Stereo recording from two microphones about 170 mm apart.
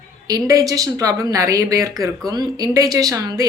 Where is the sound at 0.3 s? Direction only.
20° right (ahead or behind).